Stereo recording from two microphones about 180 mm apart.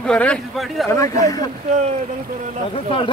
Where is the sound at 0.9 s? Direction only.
20° left (ahead or behind).